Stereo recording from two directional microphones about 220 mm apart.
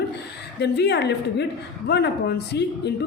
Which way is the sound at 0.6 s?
50° left (ahead or behind).